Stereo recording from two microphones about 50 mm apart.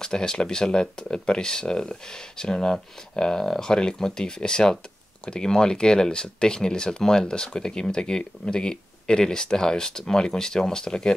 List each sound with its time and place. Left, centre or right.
0.0 s speech: centre